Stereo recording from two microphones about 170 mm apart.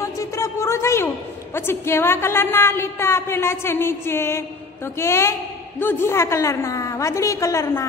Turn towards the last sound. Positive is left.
turn(degrees=20)  # may be behind; listen again after turning